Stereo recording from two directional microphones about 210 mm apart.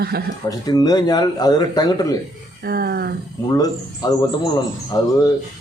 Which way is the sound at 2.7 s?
50° right (ahead or behind).